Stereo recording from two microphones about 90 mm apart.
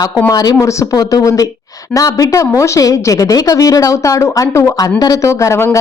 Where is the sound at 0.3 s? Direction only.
40° left (ahead or behind).